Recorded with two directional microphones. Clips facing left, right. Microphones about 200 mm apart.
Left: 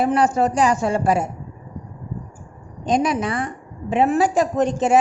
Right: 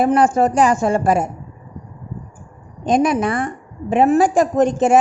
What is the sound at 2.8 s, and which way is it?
A woman's voice, 50° right (ahead or behind).